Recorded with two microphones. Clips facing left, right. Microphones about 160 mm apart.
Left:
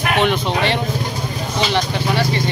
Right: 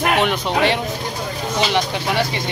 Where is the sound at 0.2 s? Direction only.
5° right (ahead or behind).